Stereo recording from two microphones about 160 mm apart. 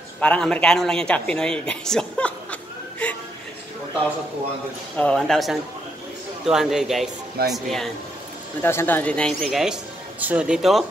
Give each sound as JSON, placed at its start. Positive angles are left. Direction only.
{"t": 0.2, "sound": "speech", "side_deg": 5}
{"t": 4.9, "sound": "speech", "side_deg": 5}
{"t": 8.6, "sound": "speech", "side_deg": 15}